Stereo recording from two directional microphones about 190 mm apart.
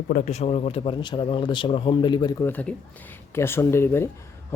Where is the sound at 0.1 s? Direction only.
40° left (ahead or behind); by 2.5 s 20° left (ahead or behind).